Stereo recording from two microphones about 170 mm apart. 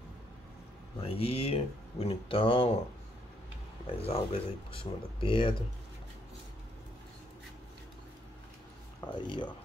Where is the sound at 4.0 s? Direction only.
35° left (ahead or behind).